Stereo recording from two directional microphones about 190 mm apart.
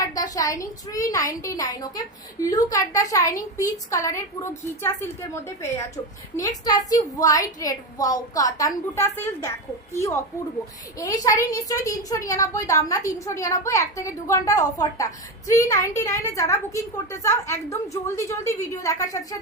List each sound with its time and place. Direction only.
0.3 s a woman's voice: 15° left (ahead or behind)
6.3 s a woman's voice: 20° left (ahead or behind)